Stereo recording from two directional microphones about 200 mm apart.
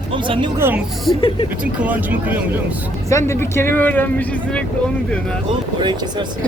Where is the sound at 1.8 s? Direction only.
10° right (ahead or behind).